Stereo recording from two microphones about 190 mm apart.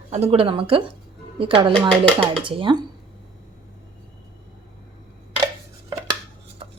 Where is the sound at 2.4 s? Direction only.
25° right (ahead or behind).